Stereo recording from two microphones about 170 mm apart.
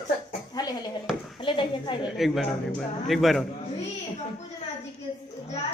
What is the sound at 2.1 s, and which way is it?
A man's voice, centre (ahead or behind).